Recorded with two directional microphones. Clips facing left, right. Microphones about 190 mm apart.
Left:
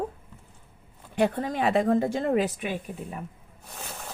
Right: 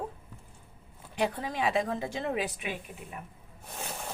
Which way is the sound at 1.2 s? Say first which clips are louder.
Left 5 dB; 50° left (ahead or behind).